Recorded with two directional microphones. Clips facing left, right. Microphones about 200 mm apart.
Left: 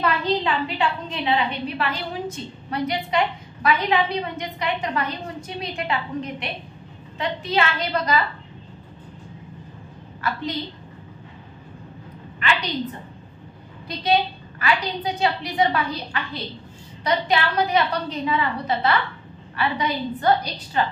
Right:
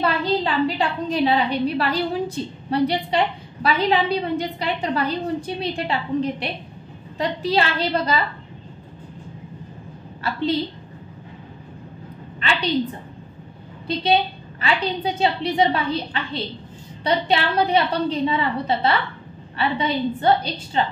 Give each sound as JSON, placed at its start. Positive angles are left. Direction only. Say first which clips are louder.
{"t": 0.0, "sound": "a woman's voice", "louder": "right 1 dB", "side_deg": -35}
{"t": 10.2, "sound": "a woman's voice", "louder": "even", "side_deg": -30}
{"t": 12.4, "sound": "a sound", "louder": "even", "side_deg": -30}
{"t": 13.8, "sound": "a woman's voice", "louder": "right 2 dB", "side_deg": -25}